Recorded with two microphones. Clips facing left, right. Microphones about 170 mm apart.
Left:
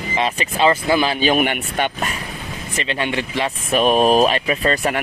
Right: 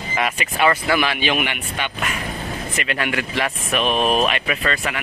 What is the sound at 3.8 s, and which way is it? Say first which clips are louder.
Speech: left 5 dB; 40° left (ahead or behind).